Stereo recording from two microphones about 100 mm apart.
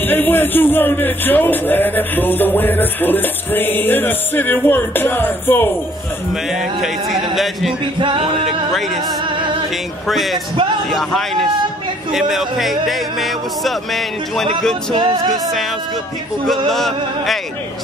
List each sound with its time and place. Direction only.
0.0 s a man's voice: 20° left (ahead or behind)
8.0 s music: 60° right (ahead or behind)
10.0 s speech: centre (ahead or behind)
15.0 s music: 55° right (ahead or behind)
16.7 s speech: centre (ahead or behind)